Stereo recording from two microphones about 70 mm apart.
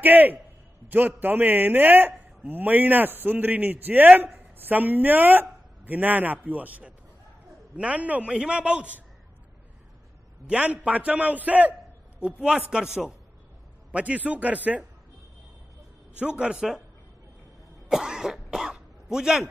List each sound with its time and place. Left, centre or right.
0.0 s a man's voice: right
10.4 s a man's voice: centre
13.9 s a man's voice: centre
16.2 s a man's voice: centre
17.8 s cough: centre